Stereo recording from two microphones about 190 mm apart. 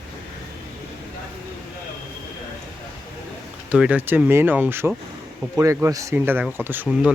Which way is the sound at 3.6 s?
5° right (ahead or behind).